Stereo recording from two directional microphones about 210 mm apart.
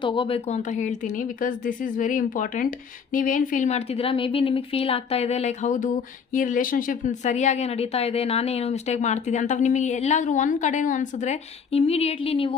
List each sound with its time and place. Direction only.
0.0 s speech: 25° left (ahead or behind)